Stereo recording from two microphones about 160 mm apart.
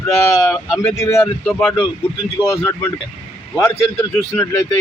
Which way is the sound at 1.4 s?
5° left (ahead or behind).